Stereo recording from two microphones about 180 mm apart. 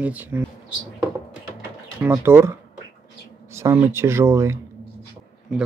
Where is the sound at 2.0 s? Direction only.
15° right (ahead or behind).